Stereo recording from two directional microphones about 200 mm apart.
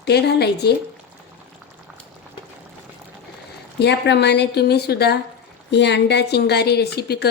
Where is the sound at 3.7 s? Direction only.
60° left (ahead or behind).